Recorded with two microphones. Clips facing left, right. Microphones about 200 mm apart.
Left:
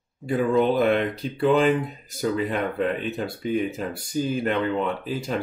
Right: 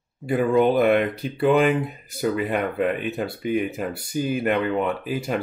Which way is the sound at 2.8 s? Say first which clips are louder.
Right 2 dB; 10° right (ahead or behind).